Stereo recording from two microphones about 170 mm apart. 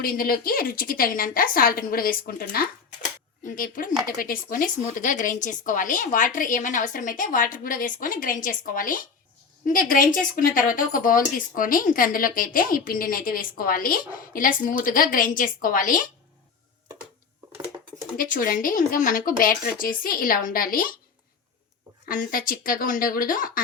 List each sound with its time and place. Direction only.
0.0 s speech: 60° left (ahead or behind)
18.2 s speech: 55° left (ahead or behind)
22.1 s speech: 55° left (ahead or behind)